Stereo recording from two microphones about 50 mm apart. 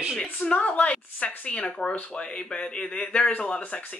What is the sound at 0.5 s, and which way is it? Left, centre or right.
Speech, left.